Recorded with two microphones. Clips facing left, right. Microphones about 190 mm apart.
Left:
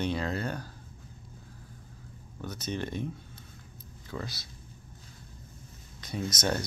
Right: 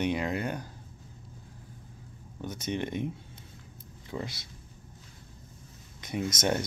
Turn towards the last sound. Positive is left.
turn(degrees=-25)  # may be behind; listen again after turning